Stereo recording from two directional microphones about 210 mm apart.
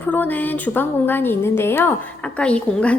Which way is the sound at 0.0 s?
10° left (ahead or behind).